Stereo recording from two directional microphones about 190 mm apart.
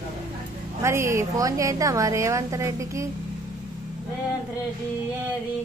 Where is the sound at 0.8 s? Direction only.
15° right (ahead or behind).